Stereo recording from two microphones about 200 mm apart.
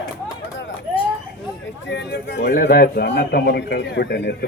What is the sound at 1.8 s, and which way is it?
Speech, 60° left (ahead or behind).